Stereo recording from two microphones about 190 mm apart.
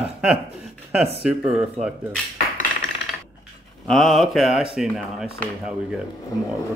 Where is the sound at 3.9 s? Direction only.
Centre (ahead or behind).